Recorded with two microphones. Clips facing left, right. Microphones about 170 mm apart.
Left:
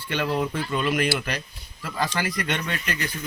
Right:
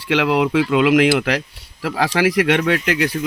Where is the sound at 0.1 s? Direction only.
90° right.